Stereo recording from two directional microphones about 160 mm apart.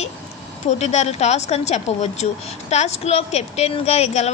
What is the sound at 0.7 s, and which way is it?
A woman's voice, 45° left (ahead or behind).